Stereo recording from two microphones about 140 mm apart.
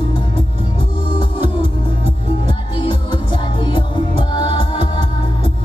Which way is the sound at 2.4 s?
35° left (ahead or behind).